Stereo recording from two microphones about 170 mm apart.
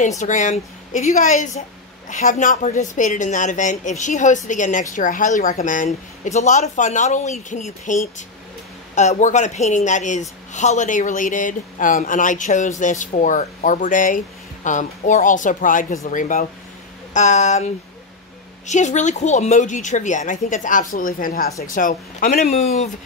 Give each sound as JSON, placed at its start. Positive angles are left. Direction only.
{"t": 0.2, "sound": "a woman's voice", "side_deg": 45}